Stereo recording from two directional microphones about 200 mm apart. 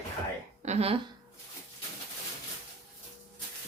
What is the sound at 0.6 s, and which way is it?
Speech, 30° right (ahead or behind).